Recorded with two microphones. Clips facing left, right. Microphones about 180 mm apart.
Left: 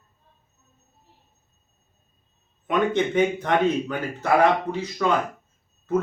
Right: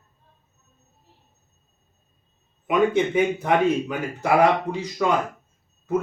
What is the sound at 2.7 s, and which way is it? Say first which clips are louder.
Speech: right 2 dB; 10° right (ahead or behind).